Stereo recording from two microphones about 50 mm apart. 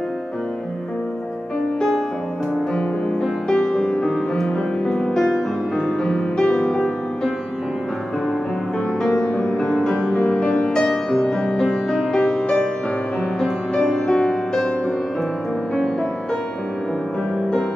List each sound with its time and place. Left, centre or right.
3.4 s music: centre
9.0 s music: centre
10.1 s music: left
10.5 s music: centre